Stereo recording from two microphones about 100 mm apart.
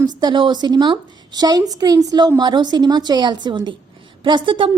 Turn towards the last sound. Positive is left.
turn(degrees=-55)  # may be behind; listen again after turning